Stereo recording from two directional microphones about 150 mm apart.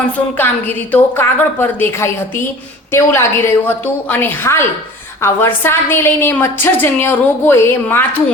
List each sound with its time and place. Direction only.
0.3 s a woman's voice: 10° left (ahead or behind)